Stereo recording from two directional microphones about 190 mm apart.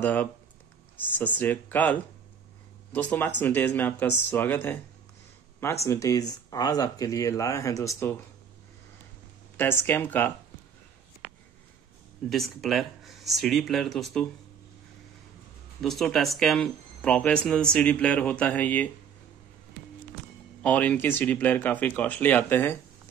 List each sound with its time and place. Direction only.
0.0 s speech: 10° left (ahead or behind)
5.9 s speech: 15° left (ahead or behind)
9.6 s speech: 10° left (ahead or behind)
12.3 s speech: centre (ahead or behind)
15.8 s speech: centre (ahead or behind)
20.6 s speech: 10° left (ahead or behind)